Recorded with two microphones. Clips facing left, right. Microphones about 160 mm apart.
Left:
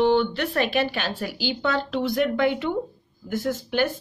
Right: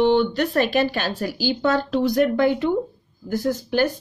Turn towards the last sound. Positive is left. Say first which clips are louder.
# right 3 dB
turn(degrees=-40)  # may be behind; listen again after turning